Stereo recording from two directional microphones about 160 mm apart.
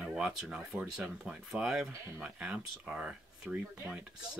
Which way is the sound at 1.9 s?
15° right (ahead or behind).